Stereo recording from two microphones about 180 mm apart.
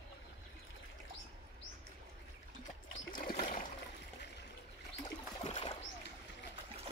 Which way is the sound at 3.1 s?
50° left (ahead or behind).